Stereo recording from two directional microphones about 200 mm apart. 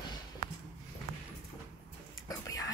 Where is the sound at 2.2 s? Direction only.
15° left (ahead or behind).